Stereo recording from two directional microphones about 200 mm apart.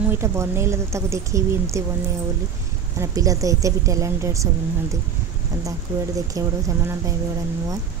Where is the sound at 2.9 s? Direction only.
15° right (ahead or behind).